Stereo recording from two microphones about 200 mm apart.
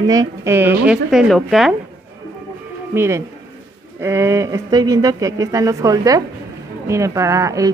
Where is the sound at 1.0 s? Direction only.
Centre (ahead or behind).